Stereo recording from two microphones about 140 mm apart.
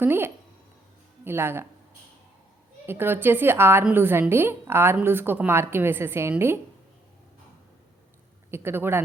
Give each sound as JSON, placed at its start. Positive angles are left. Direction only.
{"t": 0.0, "sound": "a woman's voice", "side_deg": -15}
{"t": 2.8, "sound": "a woman's voice", "side_deg": -15}
{"t": 8.4, "sound": "a woman's voice", "side_deg": -15}